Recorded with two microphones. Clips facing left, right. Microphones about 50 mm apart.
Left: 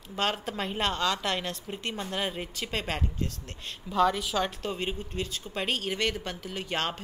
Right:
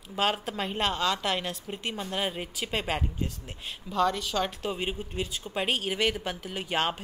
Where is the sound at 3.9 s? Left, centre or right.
Centre.